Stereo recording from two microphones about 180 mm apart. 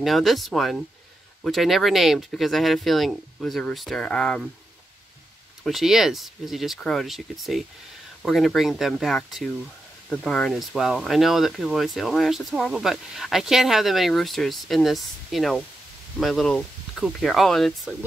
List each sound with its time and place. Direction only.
0.0 s speech: centre (ahead or behind)
5.6 s speech: centre (ahead or behind)